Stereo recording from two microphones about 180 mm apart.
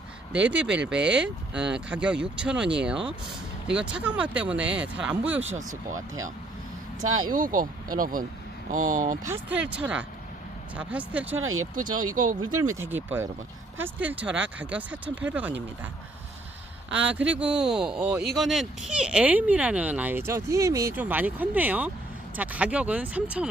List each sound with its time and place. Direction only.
0.3 s speech: 5° right (ahead or behind)
5.4 s speech: 40° right (ahead or behind)
7.3 s speech: 50° right (ahead or behind)
9.2 s speech: 10° right (ahead or behind)
11.7 s speech: 50° right (ahead or behind)
12.8 s speech: 10° right (ahead or behind)
16.9 s speech: 10° right (ahead or behind)